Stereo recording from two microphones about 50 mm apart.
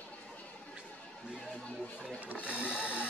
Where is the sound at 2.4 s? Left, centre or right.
Right.